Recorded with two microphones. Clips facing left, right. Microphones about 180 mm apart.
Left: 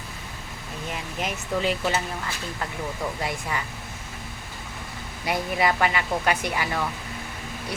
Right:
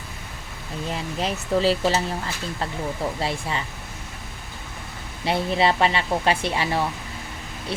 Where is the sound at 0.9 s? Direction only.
30° right (ahead or behind).